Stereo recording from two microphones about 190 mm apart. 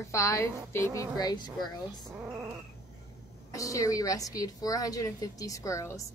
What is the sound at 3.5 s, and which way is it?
A woman's voice, 15° left (ahead or behind).